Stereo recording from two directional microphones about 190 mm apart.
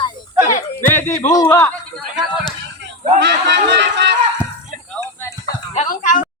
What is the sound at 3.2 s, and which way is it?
Speech, 70° right (ahead or behind).